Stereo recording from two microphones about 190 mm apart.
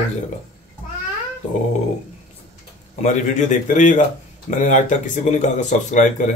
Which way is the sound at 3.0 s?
40° left (ahead or behind).